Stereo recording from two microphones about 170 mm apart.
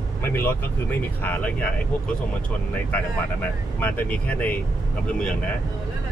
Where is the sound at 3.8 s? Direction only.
10° left (ahead or behind).